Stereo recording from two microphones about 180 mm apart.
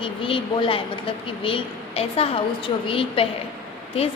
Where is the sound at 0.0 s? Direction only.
30° left (ahead or behind).